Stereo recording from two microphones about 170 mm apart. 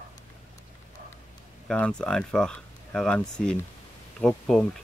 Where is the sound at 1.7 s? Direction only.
5° left (ahead or behind).